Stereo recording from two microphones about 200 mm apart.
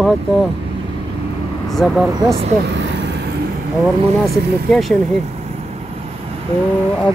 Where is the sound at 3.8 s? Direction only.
Centre (ahead or behind).